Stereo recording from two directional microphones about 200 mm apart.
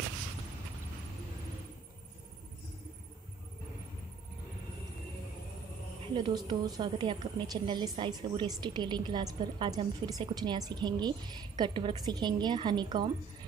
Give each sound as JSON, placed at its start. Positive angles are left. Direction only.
{"t": 6.1, "sound": "a woman's voice", "side_deg": -20}